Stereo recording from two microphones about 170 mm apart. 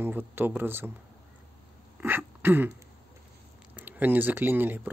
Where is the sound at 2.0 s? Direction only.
10° right (ahead or behind).